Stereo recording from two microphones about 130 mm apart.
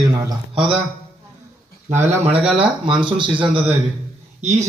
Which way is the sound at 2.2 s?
50° right (ahead or behind).